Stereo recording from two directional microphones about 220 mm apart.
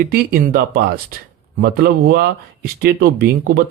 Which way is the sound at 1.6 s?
45° right (ahead or behind).